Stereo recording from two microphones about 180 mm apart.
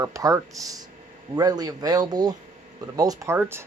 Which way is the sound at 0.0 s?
20° right (ahead or behind).